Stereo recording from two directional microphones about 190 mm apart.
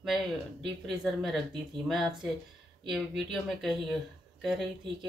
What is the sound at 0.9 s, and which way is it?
Speech, centre (ahead or behind).